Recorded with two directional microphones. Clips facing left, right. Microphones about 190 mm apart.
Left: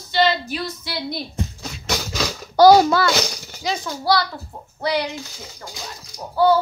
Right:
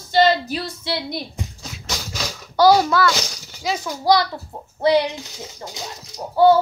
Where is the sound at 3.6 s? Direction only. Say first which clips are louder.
Right 2 dB; 5° right (ahead or behind).